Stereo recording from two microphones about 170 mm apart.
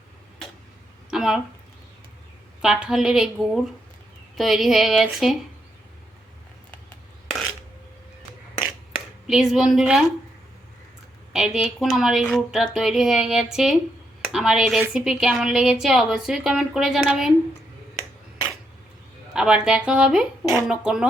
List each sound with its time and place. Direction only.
1.1 s a sound: centre (ahead or behind)
2.6 s a woman's voice: 5° right (ahead or behind)
9.2 s a woman's voice: 5° right (ahead or behind)
11.3 s a woman's voice: 5° right (ahead or behind)
19.3 s a woman's voice: 5° right (ahead or behind)